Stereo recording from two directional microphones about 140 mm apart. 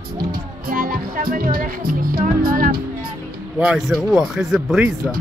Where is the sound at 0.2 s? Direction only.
90° right.